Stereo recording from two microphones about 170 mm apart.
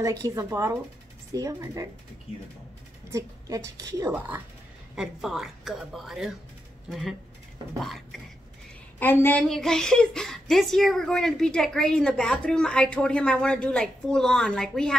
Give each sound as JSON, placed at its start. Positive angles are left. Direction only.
{"t": 0.0, "sound": "a woman's voice", "side_deg": -20}
{"t": 3.1, "sound": "a woman's voice", "side_deg": -20}
{"t": 4.9, "sound": "a woman's voice", "side_deg": -5}
{"t": 9.0, "sound": "a woman's voice", "side_deg": 10}